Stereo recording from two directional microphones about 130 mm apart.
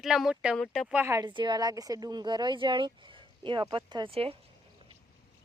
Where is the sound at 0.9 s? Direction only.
20° right (ahead or behind).